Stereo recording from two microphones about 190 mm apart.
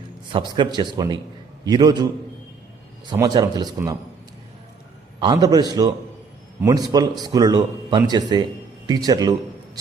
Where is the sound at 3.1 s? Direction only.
20° right (ahead or behind).